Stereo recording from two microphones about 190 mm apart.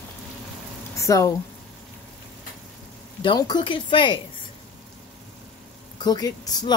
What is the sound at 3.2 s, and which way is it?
Speech, 25° left (ahead or behind).